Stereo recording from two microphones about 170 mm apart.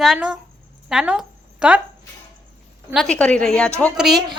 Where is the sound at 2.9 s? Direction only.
5° left (ahead or behind).